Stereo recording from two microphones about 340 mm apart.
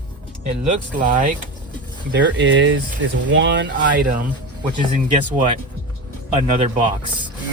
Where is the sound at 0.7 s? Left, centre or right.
Right.